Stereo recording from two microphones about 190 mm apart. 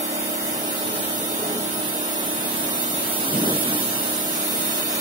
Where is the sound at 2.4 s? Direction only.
25° right (ahead or behind).